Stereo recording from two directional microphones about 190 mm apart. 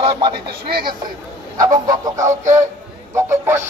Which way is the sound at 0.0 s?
25° right (ahead or behind).